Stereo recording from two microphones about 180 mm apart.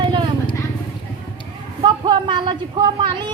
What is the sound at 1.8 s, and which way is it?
A woman's voice, 25° right (ahead or behind).